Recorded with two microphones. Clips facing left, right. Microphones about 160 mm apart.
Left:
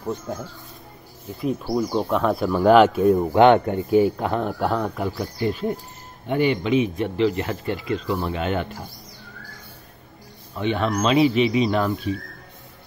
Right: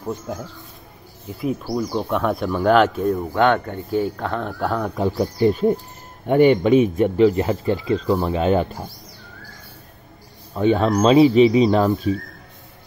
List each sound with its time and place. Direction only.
1.4 s speech: 5° right (ahead or behind)
3.2 s speech: 20° left (ahead or behind); by 4.9 s 5° left (ahead or behind)
4.9 s speech: 30° right (ahead or behind)
6.2 s speech: 50° right (ahead or behind)
10.5 s speech: 40° right (ahead or behind)